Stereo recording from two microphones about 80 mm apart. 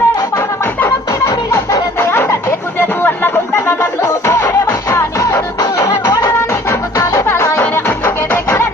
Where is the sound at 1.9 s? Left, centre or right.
Left.